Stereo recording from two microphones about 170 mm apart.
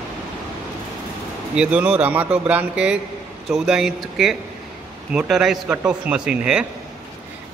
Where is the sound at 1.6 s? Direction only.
5° right (ahead or behind).